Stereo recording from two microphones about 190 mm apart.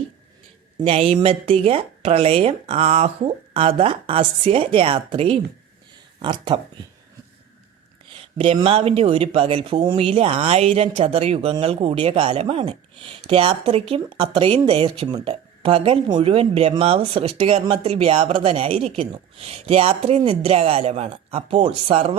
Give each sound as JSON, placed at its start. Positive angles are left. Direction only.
{"t": 0.8, "sound": "speech", "side_deg": -30}
{"t": 8.4, "sound": "speech", "side_deg": -30}